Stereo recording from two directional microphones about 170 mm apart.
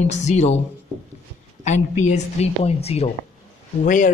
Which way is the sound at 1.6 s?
45° left (ahead or behind).